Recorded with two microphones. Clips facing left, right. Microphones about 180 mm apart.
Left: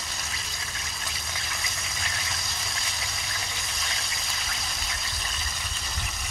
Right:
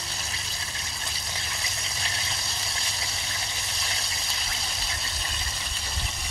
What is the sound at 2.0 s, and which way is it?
Vehicle, 30° right (ahead or behind).